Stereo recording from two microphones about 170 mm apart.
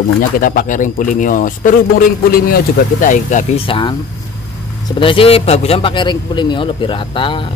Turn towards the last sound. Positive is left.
turn(degrees=30)  # may be behind; listen again after turning